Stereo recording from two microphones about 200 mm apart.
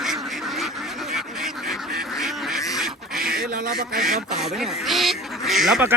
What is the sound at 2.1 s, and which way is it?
Duck, centre (ahead or behind).